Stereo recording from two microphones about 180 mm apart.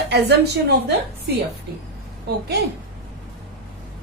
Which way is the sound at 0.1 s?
65° right (ahead or behind).